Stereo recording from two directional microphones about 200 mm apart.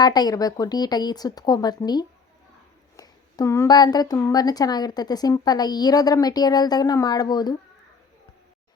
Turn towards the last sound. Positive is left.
turn(degrees=20)  # may be behind; listen again after turning